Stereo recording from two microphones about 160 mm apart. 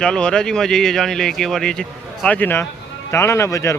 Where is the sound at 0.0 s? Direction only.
5° left (ahead or behind).